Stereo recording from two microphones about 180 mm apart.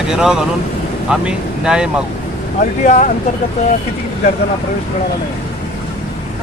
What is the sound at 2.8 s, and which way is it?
Speech, 45° left (ahead or behind).